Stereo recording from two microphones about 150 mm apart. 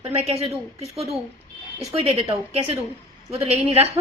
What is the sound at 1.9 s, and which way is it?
A woman's voice, 40° right (ahead or behind).